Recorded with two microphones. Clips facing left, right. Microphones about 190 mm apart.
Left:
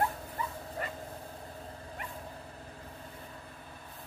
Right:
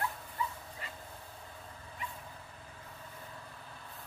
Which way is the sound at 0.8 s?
55° left (ahead or behind).